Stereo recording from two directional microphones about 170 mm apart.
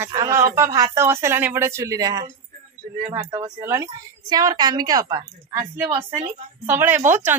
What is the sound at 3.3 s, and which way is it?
A woman's voice, 20° right (ahead or behind).